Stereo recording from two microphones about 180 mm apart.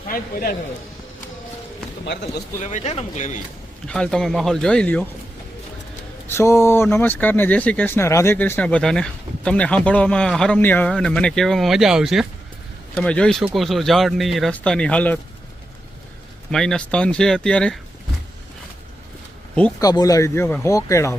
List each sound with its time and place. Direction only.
0.1 s a man's voice: 50° left (ahead or behind)
2.6 s speech: 40° left (ahead or behind)
3.8 s speech: 5° left (ahead or behind)
6.2 s speech: 15° left (ahead or behind)
16.5 s speech: 5° left (ahead or behind)
19.8 s speech: 20° left (ahead or behind)